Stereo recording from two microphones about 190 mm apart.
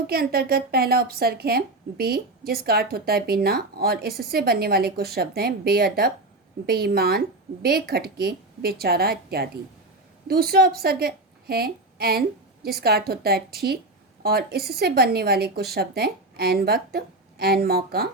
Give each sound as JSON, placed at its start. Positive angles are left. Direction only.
{"t": 0.1, "sound": "a woman's voice", "side_deg": -55}